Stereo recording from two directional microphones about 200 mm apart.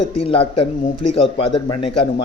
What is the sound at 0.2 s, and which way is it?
Speech, 30° left (ahead or behind).